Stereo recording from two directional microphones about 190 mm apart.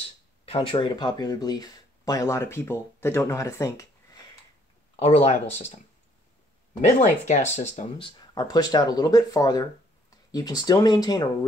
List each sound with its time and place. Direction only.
0.5 s speech: 30° left (ahead or behind)
4.9 s speech: 35° left (ahead or behind)
7.0 s speech: 40° left (ahead or behind)
8.4 s speech: 20° left (ahead or behind)